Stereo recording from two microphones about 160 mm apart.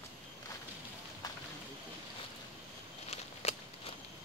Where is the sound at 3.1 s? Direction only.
40° left (ahead or behind).